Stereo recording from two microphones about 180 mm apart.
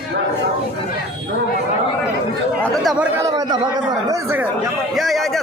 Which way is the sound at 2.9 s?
10° right (ahead or behind).